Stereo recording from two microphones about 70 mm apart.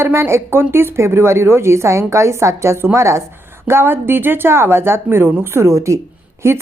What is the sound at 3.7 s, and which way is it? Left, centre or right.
A woman's voice, right.